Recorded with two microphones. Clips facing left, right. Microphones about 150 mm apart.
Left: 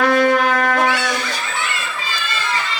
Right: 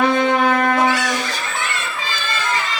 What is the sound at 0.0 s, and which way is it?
Shofar, 20° right (ahead or behind).